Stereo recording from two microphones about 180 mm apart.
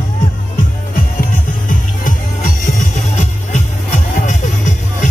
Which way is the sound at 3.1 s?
40° left (ahead or behind).